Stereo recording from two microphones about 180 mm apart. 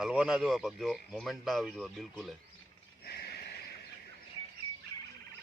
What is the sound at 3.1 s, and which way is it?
Horse, 60° left (ahead or behind).